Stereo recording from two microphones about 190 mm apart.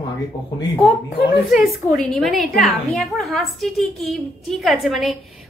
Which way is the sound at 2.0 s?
Centre (ahead or behind).